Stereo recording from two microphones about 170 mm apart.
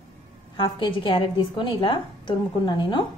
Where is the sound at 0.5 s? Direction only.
30° left (ahead or behind).